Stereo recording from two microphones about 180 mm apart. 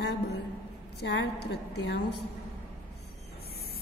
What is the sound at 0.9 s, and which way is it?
A woman's voice, 70° left (ahead or behind).